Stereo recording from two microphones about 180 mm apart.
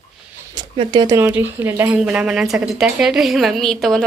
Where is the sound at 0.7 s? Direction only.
25° right (ahead or behind).